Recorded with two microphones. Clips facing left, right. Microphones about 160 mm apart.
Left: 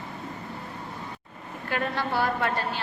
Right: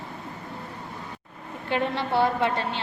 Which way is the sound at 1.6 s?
25° right (ahead or behind).